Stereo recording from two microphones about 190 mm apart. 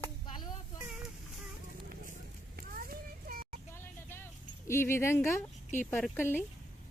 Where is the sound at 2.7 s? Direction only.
50° right (ahead or behind).